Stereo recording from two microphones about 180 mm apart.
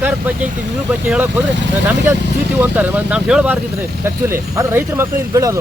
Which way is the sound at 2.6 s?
10° right (ahead or behind).